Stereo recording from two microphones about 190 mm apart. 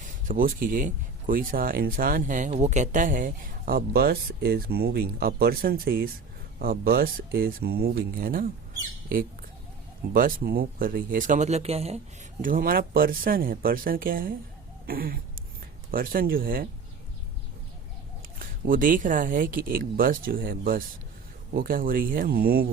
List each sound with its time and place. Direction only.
0.0 s speech: 45° right (ahead or behind)
10.1 s speech: 50° right (ahead or behind); by 11.9 s 35° right (ahead or behind)
12.4 s speech: 45° right (ahead or behind)
18.3 s speech: 45° right (ahead or behind)